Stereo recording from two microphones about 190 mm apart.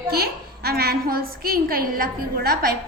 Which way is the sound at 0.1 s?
55° right (ahead or behind).